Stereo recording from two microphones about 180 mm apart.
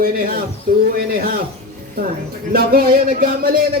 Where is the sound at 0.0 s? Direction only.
55° right (ahead or behind).